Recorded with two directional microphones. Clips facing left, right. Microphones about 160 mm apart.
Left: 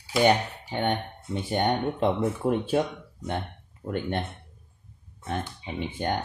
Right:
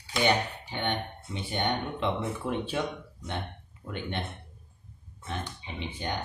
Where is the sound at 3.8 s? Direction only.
45° left (ahead or behind).